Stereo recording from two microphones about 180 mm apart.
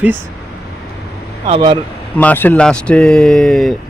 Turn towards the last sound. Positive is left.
turn(degrees=0)  # may be behind; listen again after turning